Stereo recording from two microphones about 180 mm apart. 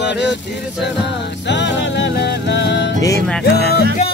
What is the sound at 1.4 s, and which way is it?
Music, 80° left.